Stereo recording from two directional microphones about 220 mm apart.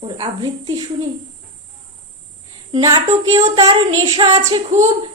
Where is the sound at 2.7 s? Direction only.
15° right (ahead or behind).